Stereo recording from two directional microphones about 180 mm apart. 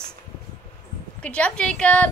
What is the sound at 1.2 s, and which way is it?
Speech, 5° left (ahead or behind).